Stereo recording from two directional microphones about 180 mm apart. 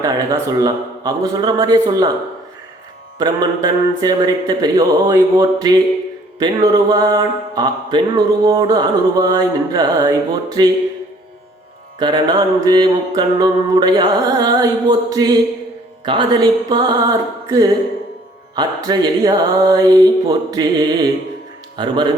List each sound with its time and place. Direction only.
0.0 s mantra: 20° right (ahead or behind)
3.2 s mantra: 20° right (ahead or behind)
11.9 s mantra: 25° right (ahead or behind)